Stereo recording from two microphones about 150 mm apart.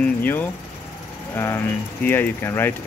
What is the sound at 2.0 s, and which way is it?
Speech, 15° left (ahead or behind).